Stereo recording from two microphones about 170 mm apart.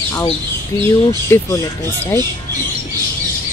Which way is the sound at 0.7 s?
20° left (ahead or behind).